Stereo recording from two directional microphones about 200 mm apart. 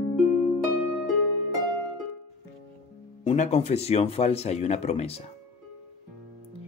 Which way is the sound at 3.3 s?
35° left (ahead or behind).